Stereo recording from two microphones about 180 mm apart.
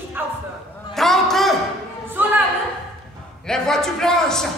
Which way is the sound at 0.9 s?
Centre (ahead or behind).